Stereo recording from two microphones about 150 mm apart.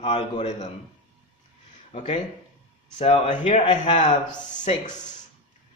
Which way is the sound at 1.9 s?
50° left (ahead or behind).